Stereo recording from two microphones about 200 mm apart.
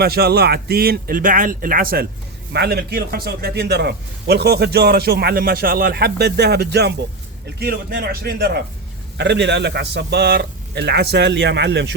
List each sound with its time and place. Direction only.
0.0 s a man's voice: 50° right (ahead or behind)